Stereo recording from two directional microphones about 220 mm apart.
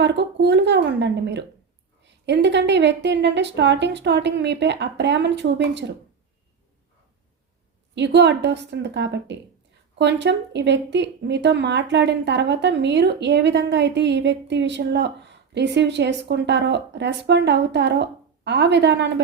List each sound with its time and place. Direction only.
0.0 s a woman's voice: 50° right (ahead or behind)
7.9 s a woman's voice: 50° right (ahead or behind)